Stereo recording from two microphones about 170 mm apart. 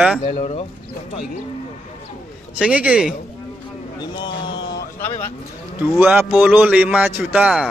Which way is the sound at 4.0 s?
25° left (ahead or behind).